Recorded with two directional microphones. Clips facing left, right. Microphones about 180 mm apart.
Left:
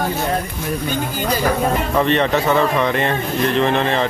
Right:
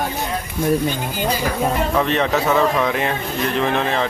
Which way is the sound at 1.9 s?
Centre (ahead or behind).